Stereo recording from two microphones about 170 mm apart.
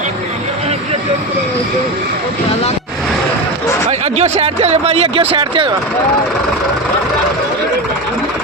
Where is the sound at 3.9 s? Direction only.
40° right (ahead or behind).